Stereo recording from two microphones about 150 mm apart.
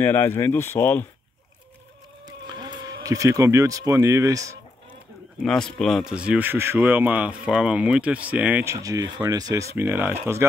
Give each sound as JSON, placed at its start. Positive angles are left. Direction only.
{"t": 0.0, "sound": "speech", "side_deg": 15}
{"t": 2.2, "sound": "speech", "side_deg": -25}
{"t": 5.4, "sound": "speech", "side_deg": 5}
{"t": 8.7, "sound": "speech", "side_deg": -20}